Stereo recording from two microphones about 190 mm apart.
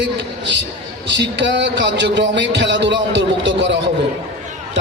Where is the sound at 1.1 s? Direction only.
70° right (ahead or behind).